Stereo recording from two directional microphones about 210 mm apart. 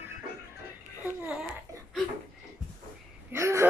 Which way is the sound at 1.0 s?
10° right (ahead or behind).